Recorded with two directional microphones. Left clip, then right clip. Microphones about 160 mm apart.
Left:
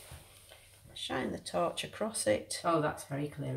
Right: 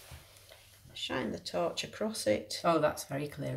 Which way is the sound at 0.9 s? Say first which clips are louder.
Right 1 dB; 15° right (ahead or behind).